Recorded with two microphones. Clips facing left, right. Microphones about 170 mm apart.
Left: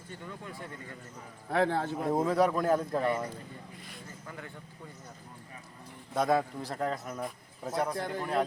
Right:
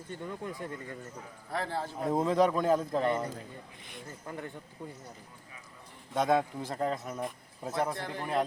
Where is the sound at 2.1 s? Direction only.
5° left (ahead or behind).